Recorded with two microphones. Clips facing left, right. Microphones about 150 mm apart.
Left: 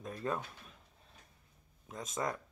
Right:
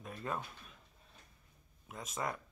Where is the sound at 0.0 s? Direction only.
35° left (ahead or behind).